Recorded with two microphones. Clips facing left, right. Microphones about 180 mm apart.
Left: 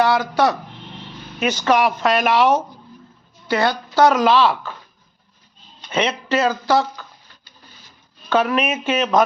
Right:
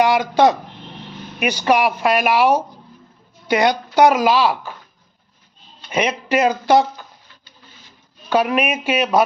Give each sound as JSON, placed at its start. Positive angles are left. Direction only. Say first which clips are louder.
{"t": 0.0, "sound": "speech", "louder": "right 3 dB", "side_deg": -20}
{"t": 5.9, "sound": "speech", "louder": "right 1 dB", "side_deg": -15}
{"t": 8.3, "sound": "speech", "louder": "right 1 dB", "side_deg": -10}